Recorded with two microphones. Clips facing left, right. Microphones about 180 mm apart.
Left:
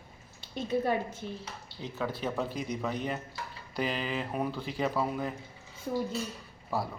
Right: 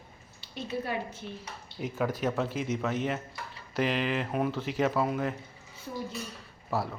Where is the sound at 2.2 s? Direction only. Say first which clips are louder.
Right 3 dB; centre (ahead or behind).